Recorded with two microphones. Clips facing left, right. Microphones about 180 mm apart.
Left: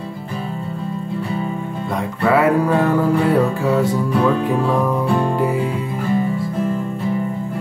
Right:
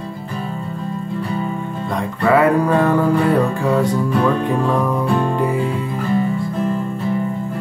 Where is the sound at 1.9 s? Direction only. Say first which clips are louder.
Right 1 dB; 5° left (ahead or behind).